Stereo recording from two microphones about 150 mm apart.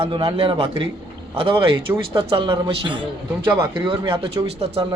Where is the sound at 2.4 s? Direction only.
35° right (ahead or behind).